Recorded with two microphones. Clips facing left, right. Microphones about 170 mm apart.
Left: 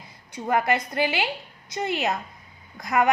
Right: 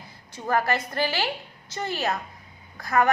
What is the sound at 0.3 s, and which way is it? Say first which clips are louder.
Speech: left 1 dB; 15° left (ahead or behind).